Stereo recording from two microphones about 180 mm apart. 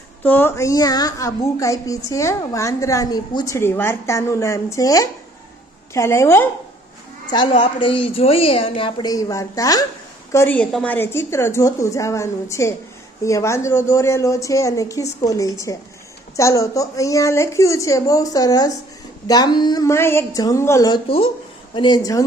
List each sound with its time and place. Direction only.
0.2 s a woman's voice: 10° left (ahead or behind)
7.3 s a woman's voice: 25° left (ahead or behind)